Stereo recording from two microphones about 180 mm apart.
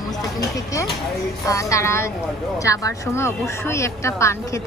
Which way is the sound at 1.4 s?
15° left (ahead or behind).